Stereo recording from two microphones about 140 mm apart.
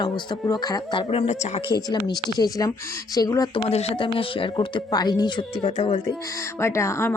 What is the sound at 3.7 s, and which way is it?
Speech, 45° left (ahead or behind).